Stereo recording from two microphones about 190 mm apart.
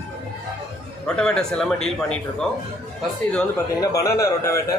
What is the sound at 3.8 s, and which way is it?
Speech, 15° left (ahead or behind).